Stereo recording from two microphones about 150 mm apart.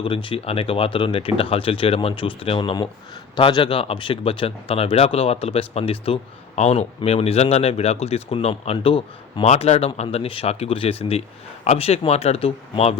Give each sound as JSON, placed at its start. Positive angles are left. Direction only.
{"t": 0.0, "sound": "a man's voice", "side_deg": 35}